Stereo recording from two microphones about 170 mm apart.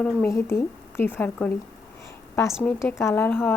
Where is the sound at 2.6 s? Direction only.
10° left (ahead or behind).